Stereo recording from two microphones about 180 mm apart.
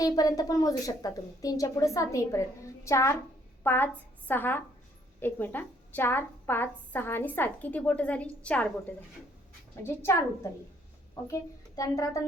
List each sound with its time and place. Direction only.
0.0 s a woman's voice: 20° left (ahead or behind)
9.8 s a woman's voice: 15° left (ahead or behind)